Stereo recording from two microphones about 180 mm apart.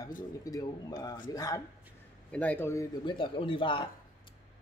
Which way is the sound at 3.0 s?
30° left (ahead or behind).